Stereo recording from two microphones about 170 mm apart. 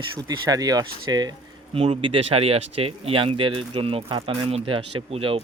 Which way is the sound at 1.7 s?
35° right (ahead or behind).